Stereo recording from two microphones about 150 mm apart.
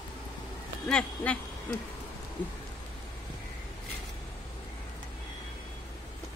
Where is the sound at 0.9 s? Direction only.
10° left (ahead or behind).